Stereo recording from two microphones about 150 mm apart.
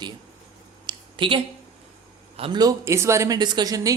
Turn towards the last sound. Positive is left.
turn(degrees=-25)  # may be behind; listen again after turning